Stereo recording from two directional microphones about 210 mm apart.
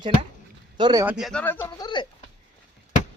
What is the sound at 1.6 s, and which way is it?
Speech, 20° left (ahead or behind).